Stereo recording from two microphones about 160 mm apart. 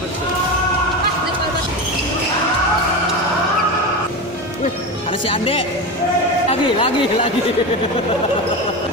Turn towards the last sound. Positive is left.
turn(degrees=40)  # may be behind; listen again after turning